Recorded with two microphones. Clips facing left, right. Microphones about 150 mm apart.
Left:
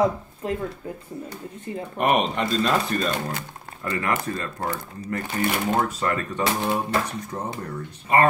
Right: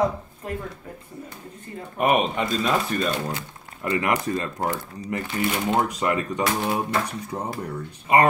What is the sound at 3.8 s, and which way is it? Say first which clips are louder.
Speech: right 2 dB; 20° right (ahead or behind).